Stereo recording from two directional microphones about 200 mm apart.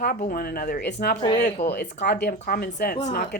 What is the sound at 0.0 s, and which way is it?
Speech, 45° left (ahead or behind).